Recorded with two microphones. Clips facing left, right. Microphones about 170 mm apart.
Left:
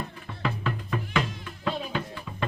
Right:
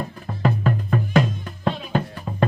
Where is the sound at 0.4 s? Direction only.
45° right (ahead or behind).